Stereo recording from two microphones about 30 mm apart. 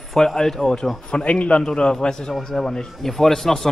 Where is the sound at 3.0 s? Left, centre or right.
Centre.